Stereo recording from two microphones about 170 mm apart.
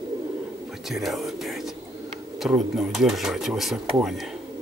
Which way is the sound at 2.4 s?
Centre (ahead or behind).